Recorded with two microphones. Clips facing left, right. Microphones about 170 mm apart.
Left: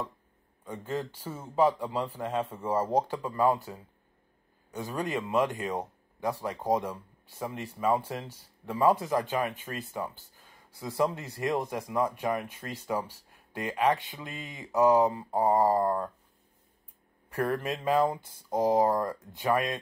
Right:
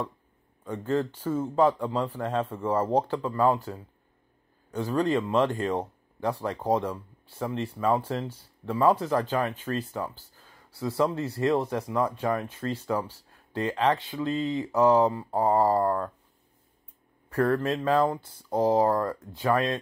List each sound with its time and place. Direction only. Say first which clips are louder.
0.7 s speech: right 7 dB; 10° left (ahead or behind)
4.6 s speech: right 7 dB; 10° left (ahead or behind)
17.3 s speech: right 5 dB; 15° left (ahead or behind)